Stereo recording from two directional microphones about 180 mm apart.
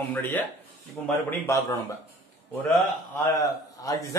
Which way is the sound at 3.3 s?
20° left (ahead or behind).